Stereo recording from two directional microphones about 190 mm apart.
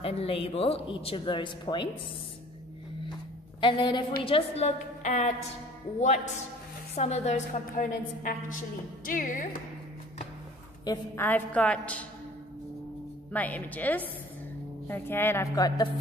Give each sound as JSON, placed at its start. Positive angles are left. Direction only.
{"t": 0.0, "sound": "speech", "side_deg": 30}
{"t": 3.6, "sound": "a woman's voice", "side_deg": 25}
{"t": 10.9, "sound": "a woman's voice", "side_deg": 10}
{"t": 13.3, "sound": "a woman's voice", "side_deg": 10}